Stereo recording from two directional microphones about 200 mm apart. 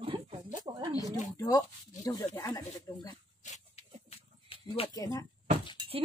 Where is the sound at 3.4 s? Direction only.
35° left (ahead or behind); by 5.3 s 20° left (ahead or behind).